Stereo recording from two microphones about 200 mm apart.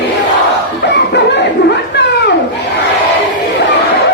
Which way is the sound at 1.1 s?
55° left (ahead or behind).